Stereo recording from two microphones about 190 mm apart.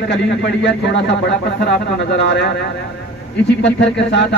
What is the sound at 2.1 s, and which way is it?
Speech, 65° left (ahead or behind).